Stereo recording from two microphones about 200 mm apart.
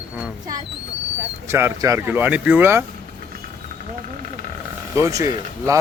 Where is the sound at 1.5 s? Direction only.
15° right (ahead or behind).